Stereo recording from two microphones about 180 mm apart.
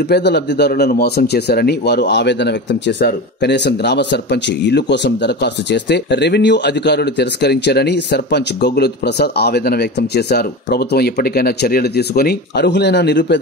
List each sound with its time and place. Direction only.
0.1 s speech: 65° left (ahead or behind)